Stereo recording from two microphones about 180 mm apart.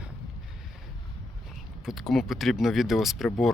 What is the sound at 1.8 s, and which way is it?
Speech, centre (ahead or behind).